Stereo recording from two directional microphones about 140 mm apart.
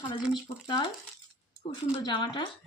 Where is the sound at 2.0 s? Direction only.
35° left (ahead or behind).